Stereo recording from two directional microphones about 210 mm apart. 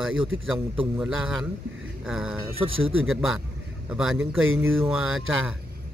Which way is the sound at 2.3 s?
25° right (ahead or behind).